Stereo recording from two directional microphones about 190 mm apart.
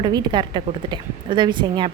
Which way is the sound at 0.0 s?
20° right (ahead or behind).